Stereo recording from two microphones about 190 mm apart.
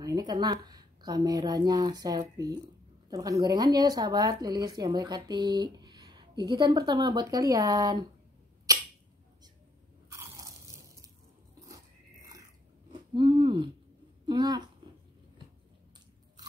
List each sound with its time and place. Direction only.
0.0 s speech: 20° right (ahead or behind)
8.7 s rodents: 15° right (ahead or behind)
10.0 s crunch: 15° right (ahead or behind)
11.6 s biting: 15° right (ahead or behind)
12.9 s a sound: 25° right (ahead or behind)
14.2 s a child's voice: 20° right (ahead or behind)